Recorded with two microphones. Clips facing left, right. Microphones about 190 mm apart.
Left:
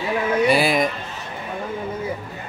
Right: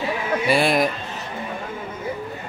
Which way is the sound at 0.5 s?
Centre (ahead or behind).